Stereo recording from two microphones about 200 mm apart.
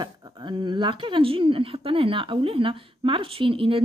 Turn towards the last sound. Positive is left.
turn(degrees=-25)  # may be behind; listen again after turning